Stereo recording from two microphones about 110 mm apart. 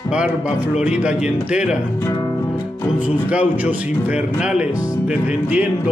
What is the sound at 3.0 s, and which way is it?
Speech, 15° right (ahead or behind).